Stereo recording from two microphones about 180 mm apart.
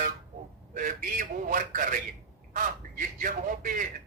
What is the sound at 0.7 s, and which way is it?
A man's voice, 45° right (ahead or behind).